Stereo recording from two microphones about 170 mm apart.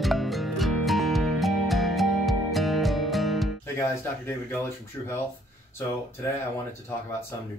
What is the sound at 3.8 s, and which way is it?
Speech, 15° left (ahead or behind).